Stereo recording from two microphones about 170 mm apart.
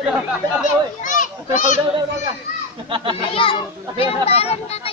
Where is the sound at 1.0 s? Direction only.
45° left (ahead or behind).